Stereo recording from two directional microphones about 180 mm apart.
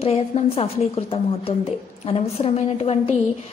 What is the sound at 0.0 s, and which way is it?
A woman's voice, 35° left (ahead or behind).